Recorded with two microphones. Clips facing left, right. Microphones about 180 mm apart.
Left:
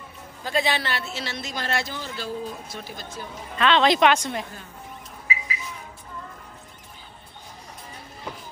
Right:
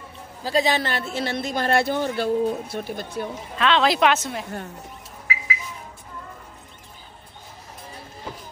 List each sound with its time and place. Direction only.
0.4 s a woman's voice: 35° right (ahead or behind); by 3.3 s 60° right (ahead or behind)
3.5 s speech: centre (ahead or behind)